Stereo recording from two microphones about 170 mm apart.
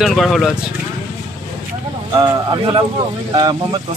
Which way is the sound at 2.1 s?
25° right (ahead or behind).